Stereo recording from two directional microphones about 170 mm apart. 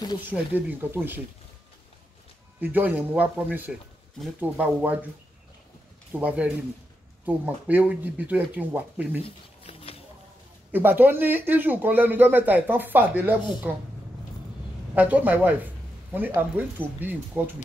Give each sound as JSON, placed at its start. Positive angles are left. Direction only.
{"t": 0.3, "sound": "speech", "side_deg": -10}
{"t": 2.6, "sound": "speech", "side_deg": -10}
{"t": 6.1, "sound": "speech", "side_deg": -10}
{"t": 9.2, "sound": "a sound", "side_deg": 35}
{"t": 10.7, "sound": "speech", "side_deg": -10}
{"t": 15.0, "sound": "a man's voice", "side_deg": -10}